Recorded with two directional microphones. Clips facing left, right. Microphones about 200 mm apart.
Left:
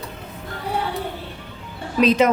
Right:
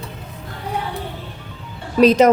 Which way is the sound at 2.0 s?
40° right (ahead or behind).